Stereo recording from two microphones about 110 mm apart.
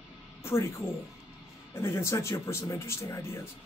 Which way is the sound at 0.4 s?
25° left (ahead or behind).